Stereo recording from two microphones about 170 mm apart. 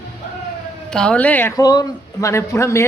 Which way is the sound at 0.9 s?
5° left (ahead or behind).